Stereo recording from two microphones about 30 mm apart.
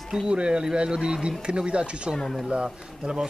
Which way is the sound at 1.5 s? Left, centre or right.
Right.